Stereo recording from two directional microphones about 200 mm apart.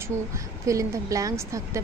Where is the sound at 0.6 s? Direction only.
15° right (ahead or behind).